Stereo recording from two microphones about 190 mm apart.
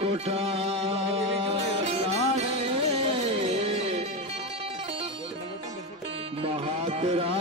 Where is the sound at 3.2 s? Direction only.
30° right (ahead or behind).